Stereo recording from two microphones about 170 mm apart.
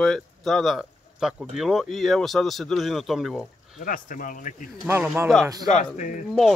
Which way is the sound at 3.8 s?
55° left (ahead or behind).